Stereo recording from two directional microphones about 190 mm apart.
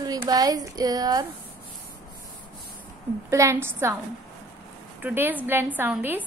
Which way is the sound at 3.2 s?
15° right (ahead or behind).